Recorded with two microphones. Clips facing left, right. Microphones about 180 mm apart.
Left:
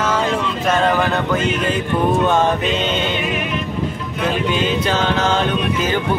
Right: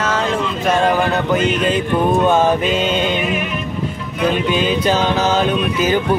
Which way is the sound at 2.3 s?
10° right (ahead or behind).